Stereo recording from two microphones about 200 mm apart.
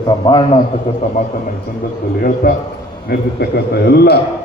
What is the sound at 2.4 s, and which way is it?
Speech, 50° left (ahead or behind).